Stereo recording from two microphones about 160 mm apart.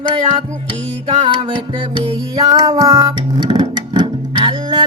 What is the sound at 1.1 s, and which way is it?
Music, 30° right (ahead or behind).